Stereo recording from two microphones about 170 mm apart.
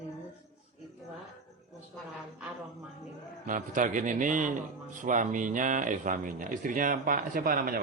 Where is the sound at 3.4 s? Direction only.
50° right (ahead or behind).